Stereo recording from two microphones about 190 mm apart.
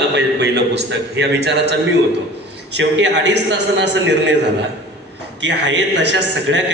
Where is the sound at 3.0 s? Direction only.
70° right (ahead or behind).